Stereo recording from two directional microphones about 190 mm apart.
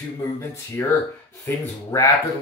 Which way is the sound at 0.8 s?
15° left (ahead or behind).